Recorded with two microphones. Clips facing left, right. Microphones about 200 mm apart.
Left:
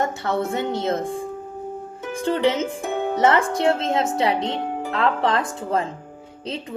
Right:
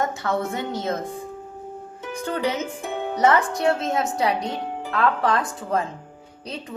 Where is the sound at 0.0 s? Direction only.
25° left (ahead or behind).